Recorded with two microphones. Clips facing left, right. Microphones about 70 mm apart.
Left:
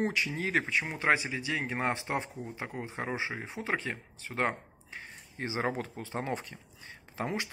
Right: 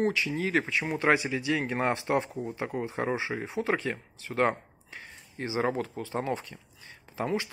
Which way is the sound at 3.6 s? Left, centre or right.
Left.